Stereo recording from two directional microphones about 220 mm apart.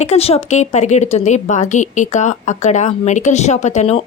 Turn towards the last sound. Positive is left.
turn(degrees=30)  # may be behind; listen again after turning